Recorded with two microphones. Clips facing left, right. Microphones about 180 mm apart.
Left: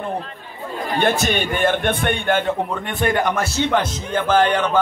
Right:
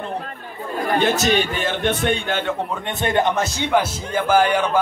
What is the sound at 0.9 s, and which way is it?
A man's voice, 55° left (ahead or behind).